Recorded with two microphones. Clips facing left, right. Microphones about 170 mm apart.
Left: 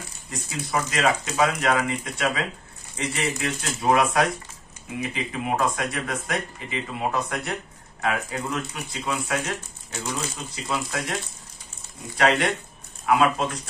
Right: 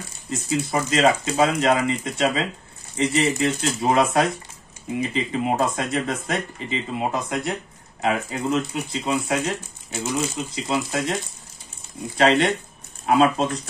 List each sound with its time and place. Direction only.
0.3 s speech: 25° right (ahead or behind)
12.2 s speech: 25° right (ahead or behind)